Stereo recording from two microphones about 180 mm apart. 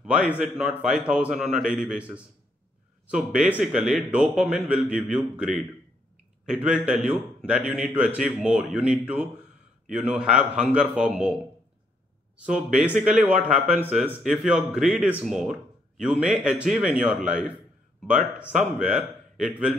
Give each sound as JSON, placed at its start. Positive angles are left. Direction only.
{"t": 0.0, "sound": "a man's voice", "side_deg": -5}
{"t": 3.4, "sound": "a man's voice", "side_deg": -5}
{"t": 12.7, "sound": "a man's voice", "side_deg": -10}